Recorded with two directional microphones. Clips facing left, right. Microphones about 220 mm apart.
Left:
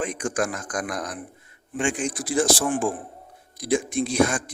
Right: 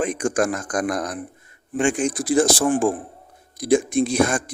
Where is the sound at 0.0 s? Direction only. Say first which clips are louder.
Right 5 dB; 50° right (ahead or behind).